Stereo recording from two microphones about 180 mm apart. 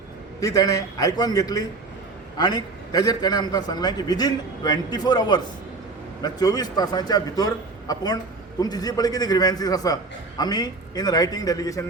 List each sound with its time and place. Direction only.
0.3 s a man's voice: 20° left (ahead or behind)